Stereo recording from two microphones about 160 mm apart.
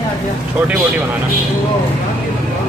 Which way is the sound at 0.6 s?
10° right (ahead or behind).